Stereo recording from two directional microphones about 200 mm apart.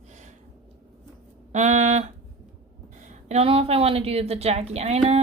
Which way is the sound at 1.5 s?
35° right (ahead or behind).